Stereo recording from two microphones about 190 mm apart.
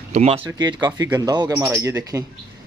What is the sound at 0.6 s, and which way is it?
A man's voice, 25° right (ahead or behind).